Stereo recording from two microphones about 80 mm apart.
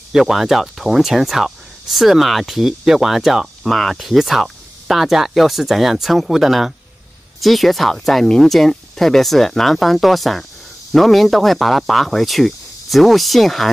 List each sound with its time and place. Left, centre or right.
0.1 s speech: centre